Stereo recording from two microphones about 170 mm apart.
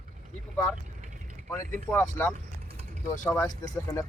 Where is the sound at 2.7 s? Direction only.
35° right (ahead or behind).